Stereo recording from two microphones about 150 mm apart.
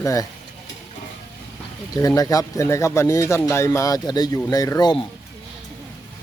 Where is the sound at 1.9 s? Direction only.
25° left (ahead or behind).